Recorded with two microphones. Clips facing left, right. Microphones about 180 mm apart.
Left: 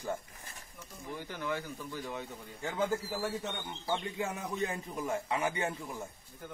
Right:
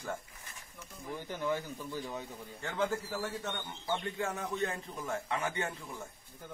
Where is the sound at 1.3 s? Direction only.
15° right (ahead or behind).